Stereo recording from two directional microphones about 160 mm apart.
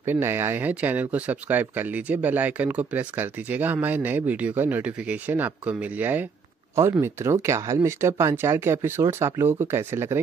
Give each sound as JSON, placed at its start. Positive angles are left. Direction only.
{"t": 0.0, "sound": "speech", "side_deg": -15}